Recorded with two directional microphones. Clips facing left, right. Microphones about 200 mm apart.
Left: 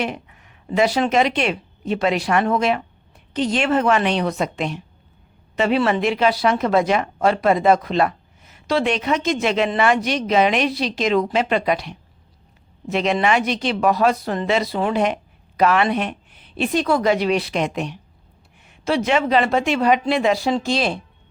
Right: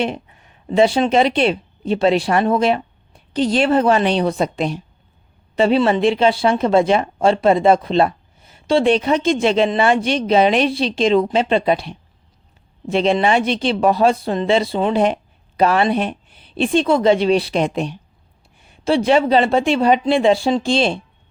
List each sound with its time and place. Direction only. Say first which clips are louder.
0.0 s speech: right 4 dB; 30° right (ahead or behind)